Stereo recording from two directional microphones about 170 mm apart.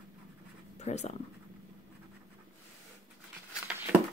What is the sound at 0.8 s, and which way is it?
Speech, 40° left (ahead or behind).